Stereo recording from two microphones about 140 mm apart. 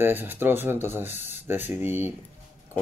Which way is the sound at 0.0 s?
15° right (ahead or behind).